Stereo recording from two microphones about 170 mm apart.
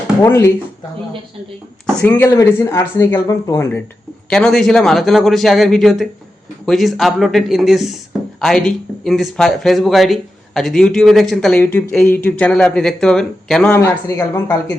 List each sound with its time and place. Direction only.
0.2 s speech: 15° left (ahead or behind)
2.0 s speech: 10° left (ahead or behind)
4.3 s speech: 5° left (ahead or behind); by 14.6 s 20° left (ahead or behind)